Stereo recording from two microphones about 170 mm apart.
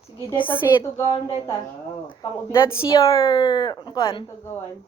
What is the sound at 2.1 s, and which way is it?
Speech, 25° left (ahead or behind).